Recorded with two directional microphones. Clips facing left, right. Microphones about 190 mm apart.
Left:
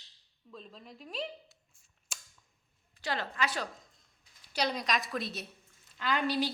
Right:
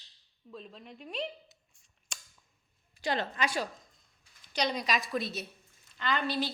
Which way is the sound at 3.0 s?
20° right (ahead or behind).